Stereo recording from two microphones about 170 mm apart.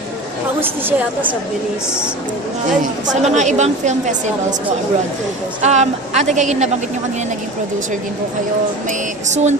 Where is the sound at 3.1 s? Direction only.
45° right (ahead or behind).